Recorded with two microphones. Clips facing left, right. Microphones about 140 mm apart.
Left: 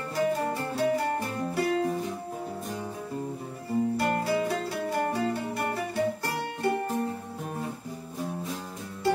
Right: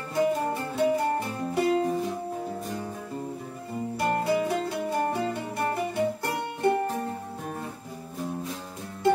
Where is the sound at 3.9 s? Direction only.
25° right (ahead or behind).